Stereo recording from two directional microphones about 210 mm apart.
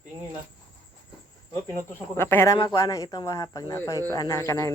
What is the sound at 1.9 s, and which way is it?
Speech, 10° left (ahead or behind).